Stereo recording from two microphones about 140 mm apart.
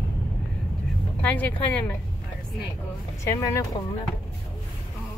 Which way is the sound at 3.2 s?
25° left (ahead or behind).